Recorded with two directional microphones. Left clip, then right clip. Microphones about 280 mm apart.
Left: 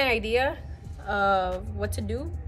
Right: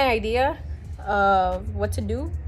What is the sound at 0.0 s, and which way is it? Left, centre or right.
A woman's voice, centre.